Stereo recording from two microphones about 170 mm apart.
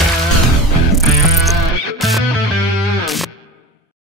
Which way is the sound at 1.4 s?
Centre (ahead or behind).